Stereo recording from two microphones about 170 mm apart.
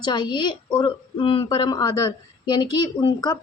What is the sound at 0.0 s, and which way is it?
Speech, 25° left (ahead or behind).